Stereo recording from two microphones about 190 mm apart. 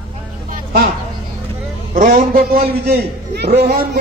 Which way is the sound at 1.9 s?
45° right (ahead or behind).